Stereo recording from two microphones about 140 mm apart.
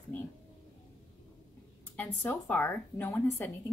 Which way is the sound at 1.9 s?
10° left (ahead or behind).